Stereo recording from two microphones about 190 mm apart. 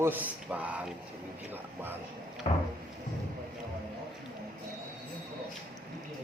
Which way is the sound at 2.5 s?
40° left (ahead or behind).